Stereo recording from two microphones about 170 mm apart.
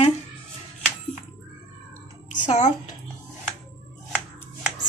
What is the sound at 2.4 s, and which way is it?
Speech, 45° left (ahead or behind).